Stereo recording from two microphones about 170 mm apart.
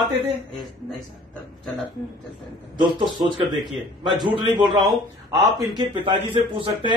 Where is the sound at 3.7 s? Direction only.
Centre (ahead or behind).